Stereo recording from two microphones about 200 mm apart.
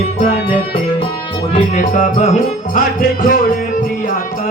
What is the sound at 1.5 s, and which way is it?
Music, 40° left (ahead or behind).